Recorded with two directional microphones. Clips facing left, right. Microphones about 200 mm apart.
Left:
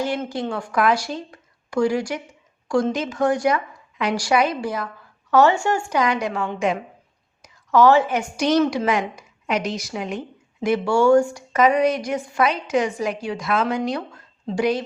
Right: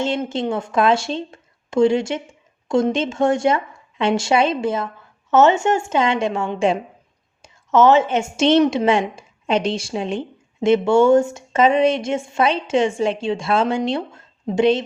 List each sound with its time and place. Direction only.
0.0 s a woman's voice: 25° right (ahead or behind)